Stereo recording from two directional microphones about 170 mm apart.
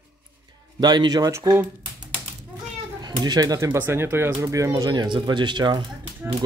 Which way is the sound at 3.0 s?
25° right (ahead or behind).